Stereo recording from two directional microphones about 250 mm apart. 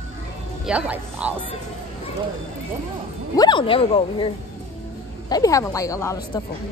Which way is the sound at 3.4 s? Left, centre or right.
Centre.